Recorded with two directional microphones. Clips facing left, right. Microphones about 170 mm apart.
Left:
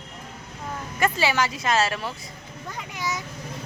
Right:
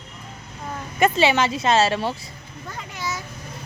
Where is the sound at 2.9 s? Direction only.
15° left (ahead or behind).